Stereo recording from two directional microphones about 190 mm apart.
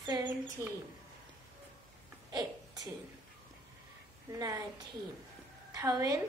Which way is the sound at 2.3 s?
20° right (ahead or behind).